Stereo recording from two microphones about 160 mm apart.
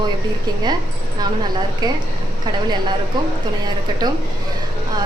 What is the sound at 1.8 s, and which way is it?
Speech, 25° right (ahead or behind).